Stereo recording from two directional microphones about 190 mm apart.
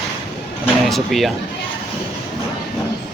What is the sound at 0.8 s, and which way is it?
Speech, centre (ahead or behind).